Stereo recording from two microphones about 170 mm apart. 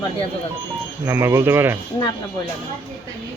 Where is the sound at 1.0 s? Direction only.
15° right (ahead or behind).